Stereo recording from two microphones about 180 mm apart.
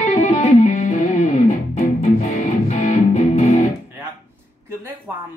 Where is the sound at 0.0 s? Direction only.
40° left (ahead or behind).